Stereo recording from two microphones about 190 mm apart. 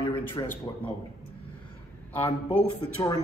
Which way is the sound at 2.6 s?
25° left (ahead or behind).